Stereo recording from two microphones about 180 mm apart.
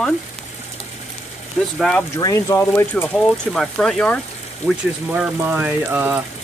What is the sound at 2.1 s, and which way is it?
Speech, 20° left (ahead or behind).